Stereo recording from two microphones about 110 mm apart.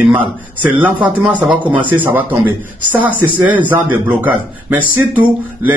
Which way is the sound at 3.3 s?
15° right (ahead or behind).